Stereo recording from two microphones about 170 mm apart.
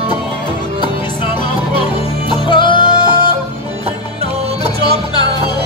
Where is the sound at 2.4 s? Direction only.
25° left (ahead or behind).